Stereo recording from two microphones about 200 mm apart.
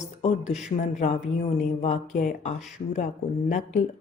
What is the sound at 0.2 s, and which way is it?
Speech, 35° left (ahead or behind).